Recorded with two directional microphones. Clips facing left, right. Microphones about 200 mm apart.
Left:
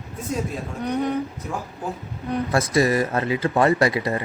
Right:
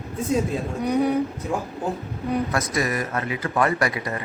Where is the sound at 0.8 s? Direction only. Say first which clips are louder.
Right 2 dB; 10° right (ahead or behind).